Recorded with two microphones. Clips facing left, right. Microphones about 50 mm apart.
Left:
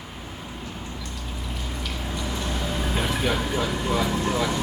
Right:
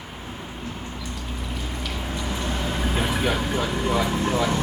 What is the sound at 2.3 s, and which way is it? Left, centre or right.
Vehicle, centre.